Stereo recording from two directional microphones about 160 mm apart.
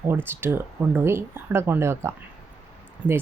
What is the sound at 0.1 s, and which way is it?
Speech, 15° right (ahead or behind).